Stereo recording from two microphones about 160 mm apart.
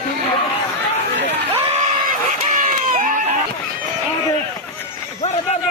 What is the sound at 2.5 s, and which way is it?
Crowd, 50° right (ahead or behind).